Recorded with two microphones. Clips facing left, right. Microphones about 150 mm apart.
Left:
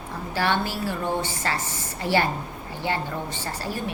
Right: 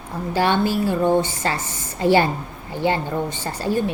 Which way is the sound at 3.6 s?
20° right (ahead or behind).